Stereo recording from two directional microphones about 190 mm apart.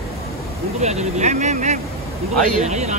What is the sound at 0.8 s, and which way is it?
Speech, 35° right (ahead or behind).